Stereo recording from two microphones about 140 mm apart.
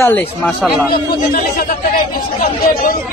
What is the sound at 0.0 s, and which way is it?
Speech, 10° left (ahead or behind).